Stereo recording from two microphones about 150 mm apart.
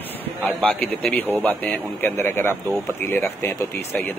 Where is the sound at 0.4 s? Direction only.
10° left (ahead or behind).